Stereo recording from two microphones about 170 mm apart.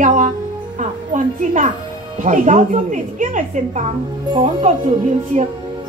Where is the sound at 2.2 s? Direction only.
45° right (ahead or behind).